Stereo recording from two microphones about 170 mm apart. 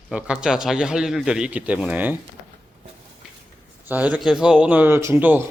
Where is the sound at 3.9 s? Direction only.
10° right (ahead or behind).